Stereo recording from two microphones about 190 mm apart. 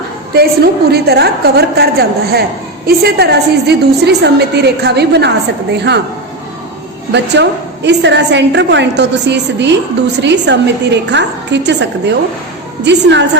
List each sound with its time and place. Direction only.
0.3 s a woman's voice: 55° right (ahead or behind)
7.1 s a woman's voice: 65° right (ahead or behind)